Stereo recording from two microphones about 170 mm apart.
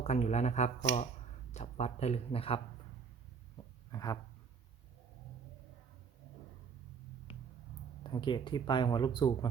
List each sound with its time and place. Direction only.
0.0 s speech: 40° left (ahead or behind)
3.9 s speech: 20° left (ahead or behind)
8.0 s speech: 25° left (ahead or behind)